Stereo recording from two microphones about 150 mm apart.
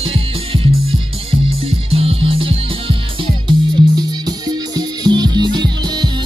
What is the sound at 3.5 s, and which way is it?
Music, 25° right (ahead or behind).